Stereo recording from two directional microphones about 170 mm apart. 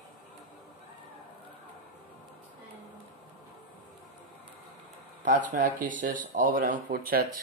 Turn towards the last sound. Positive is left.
turn(degrees=-60)  # may be behind; listen again after turning